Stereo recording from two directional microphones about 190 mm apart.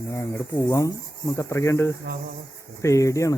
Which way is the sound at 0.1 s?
15° left (ahead or behind).